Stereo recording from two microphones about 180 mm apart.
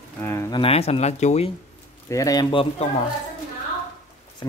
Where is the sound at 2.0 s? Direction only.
20° left (ahead or behind).